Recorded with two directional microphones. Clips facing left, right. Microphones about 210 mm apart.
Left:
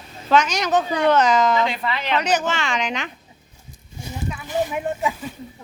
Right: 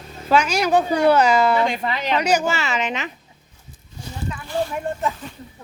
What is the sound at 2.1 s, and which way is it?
A woman's voice, 10° right (ahead or behind).